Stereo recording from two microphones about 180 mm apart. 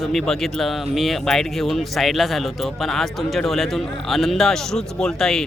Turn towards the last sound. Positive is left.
turn(degrees=5)  # may be behind; listen again after turning